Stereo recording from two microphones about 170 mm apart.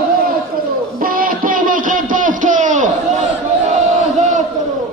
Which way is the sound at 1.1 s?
55° right (ahead or behind).